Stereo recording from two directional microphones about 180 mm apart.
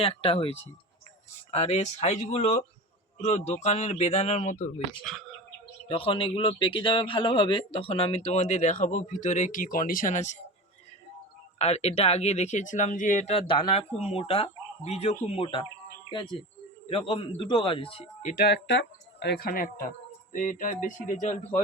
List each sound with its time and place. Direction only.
0.0 s speech: 30° left (ahead or behind)
5.1 s speech: 5° left (ahead or behind)
5.9 s speech: 30° left (ahead or behind)
11.6 s a man's voice: 35° left (ahead or behind)
18.4 s speech: 75° left (ahead or behind); by 21.4 s 45° left (ahead or behind)